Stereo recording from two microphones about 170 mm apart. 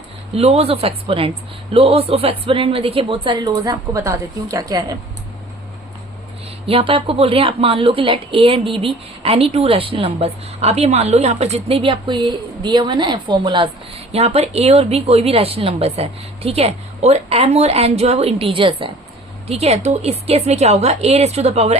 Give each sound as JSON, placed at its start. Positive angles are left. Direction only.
{"t": 0.3, "sound": "a woman's voice", "side_deg": -35}
{"t": 6.7, "sound": "a woman's voice", "side_deg": -30}